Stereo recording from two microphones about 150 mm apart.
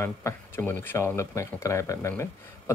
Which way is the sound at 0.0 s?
15° left (ahead or behind).